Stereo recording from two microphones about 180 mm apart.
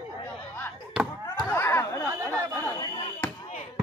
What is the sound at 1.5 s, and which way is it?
Chatter, 10° left (ahead or behind).